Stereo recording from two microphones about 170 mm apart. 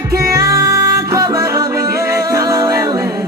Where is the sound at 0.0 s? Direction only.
20° right (ahead or behind).